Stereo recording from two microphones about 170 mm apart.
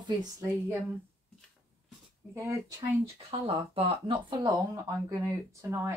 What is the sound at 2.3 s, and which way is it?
Speech, 15° right (ahead or behind).